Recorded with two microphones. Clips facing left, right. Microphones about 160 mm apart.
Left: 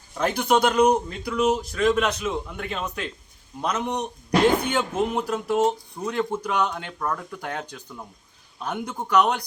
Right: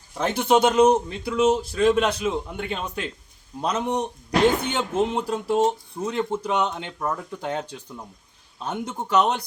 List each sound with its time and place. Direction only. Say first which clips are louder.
0.2 s a man's voice: right 1 dB; 25° right (ahead or behind)